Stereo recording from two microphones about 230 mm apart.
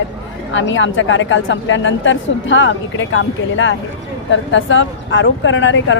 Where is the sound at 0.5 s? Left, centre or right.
Left.